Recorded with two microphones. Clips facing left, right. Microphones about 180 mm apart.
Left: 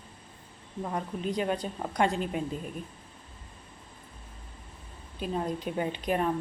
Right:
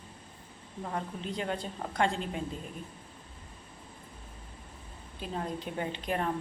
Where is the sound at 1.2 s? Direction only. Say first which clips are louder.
Left 8 dB; 15° left (ahead or behind).